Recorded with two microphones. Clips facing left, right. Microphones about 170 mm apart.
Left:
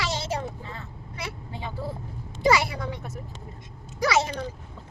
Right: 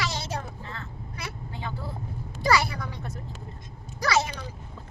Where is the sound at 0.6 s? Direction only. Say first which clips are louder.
Even; 15° left (ahead or behind).